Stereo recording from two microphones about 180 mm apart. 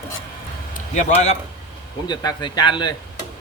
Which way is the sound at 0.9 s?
40° left (ahead or behind).